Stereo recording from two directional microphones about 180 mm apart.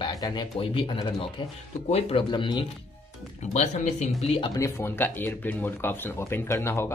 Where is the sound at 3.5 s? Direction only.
40° left (ahead or behind).